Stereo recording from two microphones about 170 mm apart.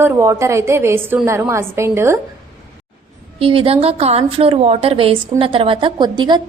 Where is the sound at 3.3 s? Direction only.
30° right (ahead or behind).